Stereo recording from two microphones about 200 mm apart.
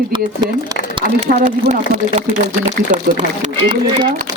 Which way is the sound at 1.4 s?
35° right (ahead or behind).